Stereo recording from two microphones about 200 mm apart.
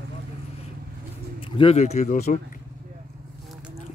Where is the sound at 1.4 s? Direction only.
30° left (ahead or behind).